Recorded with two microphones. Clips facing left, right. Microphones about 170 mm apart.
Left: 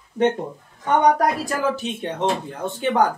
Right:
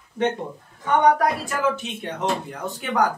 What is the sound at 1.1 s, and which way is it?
Speech, 35° left (ahead or behind).